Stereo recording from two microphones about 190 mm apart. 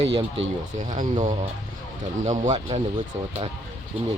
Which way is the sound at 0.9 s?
40° right (ahead or behind).